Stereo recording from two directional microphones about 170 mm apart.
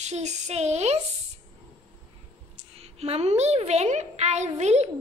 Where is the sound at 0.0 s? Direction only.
40° right (ahead or behind).